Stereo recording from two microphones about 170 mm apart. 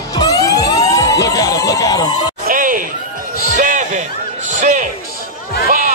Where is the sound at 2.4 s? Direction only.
55° right (ahead or behind).